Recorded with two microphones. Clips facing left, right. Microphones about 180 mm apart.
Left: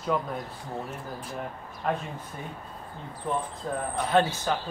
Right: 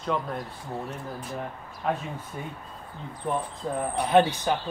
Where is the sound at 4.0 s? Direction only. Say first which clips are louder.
Right 3 dB; 15° right (ahead or behind).